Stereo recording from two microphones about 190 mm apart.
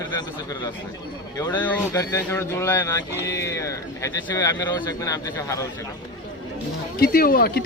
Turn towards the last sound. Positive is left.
turn(degrees=50)  # may be behind; listen again after turning